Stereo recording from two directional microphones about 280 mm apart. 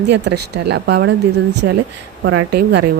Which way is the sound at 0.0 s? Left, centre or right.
Right.